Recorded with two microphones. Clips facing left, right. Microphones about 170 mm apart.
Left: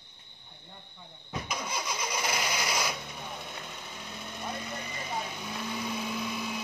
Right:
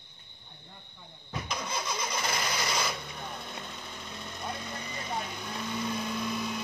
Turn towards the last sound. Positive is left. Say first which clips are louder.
# right 1 dB
turn(degrees=0)  # may be behind; listen again after turning